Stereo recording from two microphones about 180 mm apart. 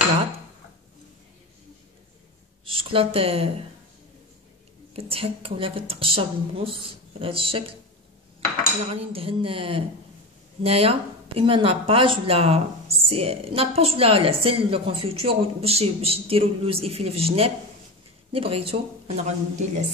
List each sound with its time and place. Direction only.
2.7 s speech: 30° right (ahead or behind)
4.9 s speech: 30° right (ahead or behind)
8.9 s speech: 30° right (ahead or behind)